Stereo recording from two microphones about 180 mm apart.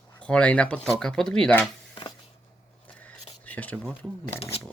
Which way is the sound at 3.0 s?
10° left (ahead or behind).